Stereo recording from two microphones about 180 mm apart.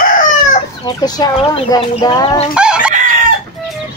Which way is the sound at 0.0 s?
50° left (ahead or behind).